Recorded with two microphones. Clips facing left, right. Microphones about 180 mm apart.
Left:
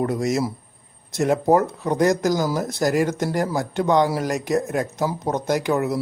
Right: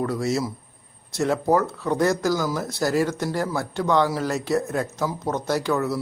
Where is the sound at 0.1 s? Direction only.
15° left (ahead or behind).